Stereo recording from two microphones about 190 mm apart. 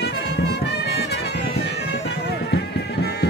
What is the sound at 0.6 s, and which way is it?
Music, 60° left (ahead or behind).